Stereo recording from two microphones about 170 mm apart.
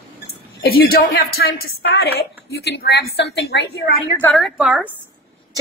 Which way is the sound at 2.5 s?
75° left (ahead or behind).